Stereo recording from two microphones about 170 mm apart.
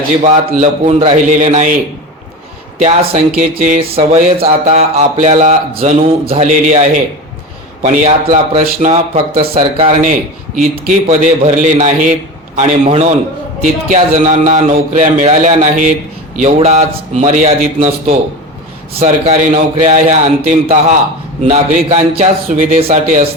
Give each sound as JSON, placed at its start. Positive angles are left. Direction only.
{"t": 0.2, "sound": "a man's voice", "side_deg": -45}
{"t": 2.7, "sound": "speech", "side_deg": -35}
{"t": 3.3, "sound": "a man's voice", "side_deg": -50}
{"t": 3.8, "sound": "a man's voice", "side_deg": -35}
{"t": 10.0, "sound": "a man's voice", "side_deg": -50}